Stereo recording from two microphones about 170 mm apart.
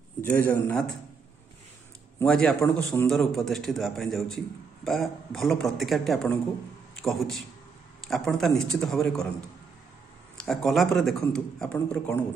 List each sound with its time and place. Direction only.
0.2 s a man's voice: 10° left (ahead or behind)
2.1 s a man's voice: 5° left (ahead or behind)
10.3 s a man's voice: centre (ahead or behind)